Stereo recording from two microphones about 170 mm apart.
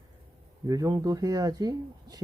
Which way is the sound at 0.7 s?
20° right (ahead or behind).